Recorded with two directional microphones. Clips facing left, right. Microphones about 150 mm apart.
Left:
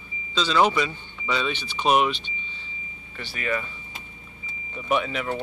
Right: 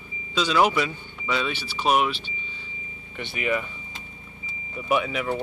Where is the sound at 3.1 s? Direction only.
20° right (ahead or behind).